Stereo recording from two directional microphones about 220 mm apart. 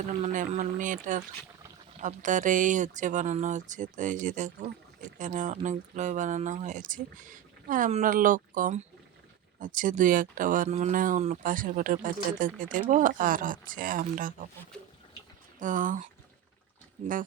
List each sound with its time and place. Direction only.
0.1 s speech: 30° right (ahead or behind)
15.5 s speech: 35° right (ahead or behind)